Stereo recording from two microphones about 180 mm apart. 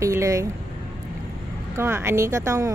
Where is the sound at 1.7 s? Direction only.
15° right (ahead or behind).